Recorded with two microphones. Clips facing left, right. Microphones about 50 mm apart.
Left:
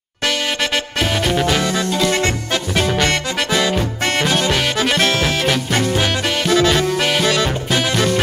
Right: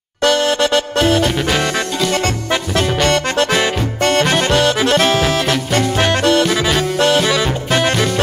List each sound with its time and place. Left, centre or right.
1.0 s music: centre
1.3 s music: centre
1.6 s music: right
4.9 s music: centre